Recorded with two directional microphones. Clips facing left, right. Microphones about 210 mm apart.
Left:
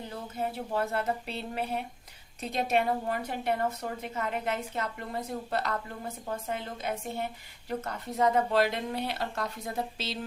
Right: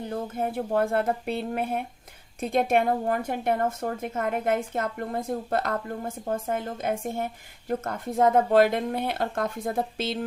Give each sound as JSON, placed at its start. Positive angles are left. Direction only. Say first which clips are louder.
{"t": 0.1, "sound": "a woman's voice", "louder": "right 5 dB", "side_deg": -50}